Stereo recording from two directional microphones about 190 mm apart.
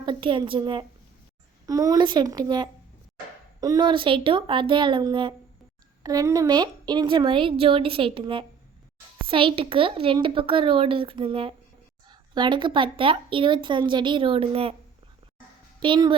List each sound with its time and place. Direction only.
0.0 s a woman's voice: 25° right (ahead or behind)
15.8 s a woman's voice: 25° right (ahead or behind)